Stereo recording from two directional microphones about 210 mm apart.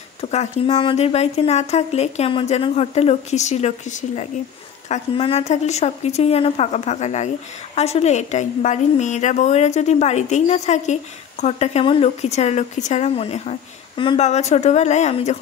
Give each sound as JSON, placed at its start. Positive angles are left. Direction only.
{"t": 0.2, "sound": "speech", "side_deg": 30}